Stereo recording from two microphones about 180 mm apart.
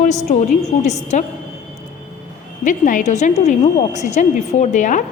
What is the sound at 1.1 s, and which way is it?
Speech, 40° left (ahead or behind).